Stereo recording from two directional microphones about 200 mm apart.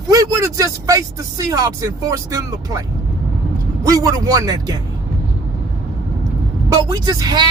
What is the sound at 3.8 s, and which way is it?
Speech, 15° right (ahead or behind).